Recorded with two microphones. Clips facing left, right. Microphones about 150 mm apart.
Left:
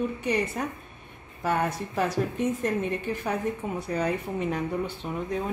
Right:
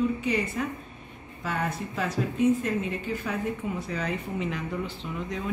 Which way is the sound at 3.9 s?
40° left (ahead or behind).